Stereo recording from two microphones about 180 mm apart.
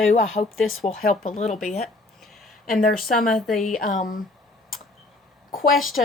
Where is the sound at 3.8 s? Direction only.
45° left (ahead or behind).